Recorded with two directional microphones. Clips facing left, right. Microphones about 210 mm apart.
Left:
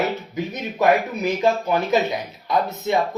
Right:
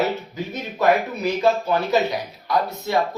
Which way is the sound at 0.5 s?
15° left (ahead or behind).